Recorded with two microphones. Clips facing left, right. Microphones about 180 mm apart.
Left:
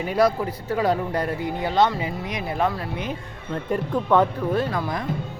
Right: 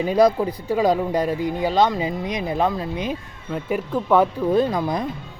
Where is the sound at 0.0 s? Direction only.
20° right (ahead or behind).